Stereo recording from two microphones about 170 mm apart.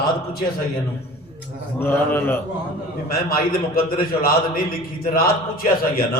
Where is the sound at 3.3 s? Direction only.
60° left (ahead or behind).